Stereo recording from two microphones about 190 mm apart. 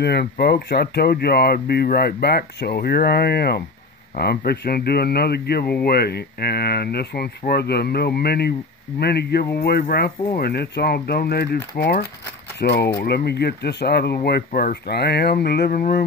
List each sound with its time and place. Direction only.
0.0 s speech: 55° left (ahead or behind)